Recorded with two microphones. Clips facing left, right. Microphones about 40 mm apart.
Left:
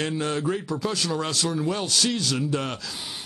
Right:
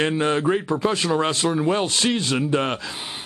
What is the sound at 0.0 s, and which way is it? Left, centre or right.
Speech, right.